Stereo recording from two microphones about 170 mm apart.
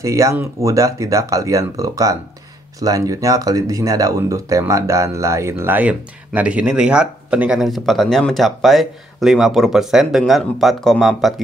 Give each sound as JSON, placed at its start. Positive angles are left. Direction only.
{"t": 0.0, "sound": "speech", "side_deg": -20}